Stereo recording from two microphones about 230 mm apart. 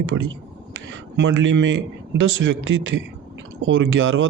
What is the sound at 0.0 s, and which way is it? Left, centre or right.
Speech, right.